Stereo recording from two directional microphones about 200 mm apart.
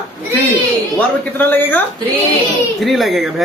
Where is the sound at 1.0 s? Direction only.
10° left (ahead or behind).